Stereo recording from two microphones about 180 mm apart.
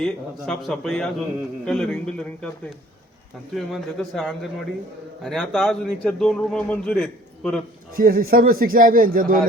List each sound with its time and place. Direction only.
0.0 s a man's voice: 5° left (ahead or behind)
3.5 s a man's voice: centre (ahead or behind)
7.9 s a man's voice: 55° right (ahead or behind)